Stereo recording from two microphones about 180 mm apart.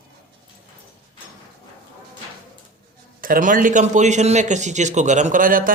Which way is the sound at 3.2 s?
50° right (ahead or behind).